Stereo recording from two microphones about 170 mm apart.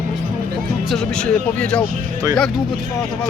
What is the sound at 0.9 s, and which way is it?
Speech, 5° left (ahead or behind).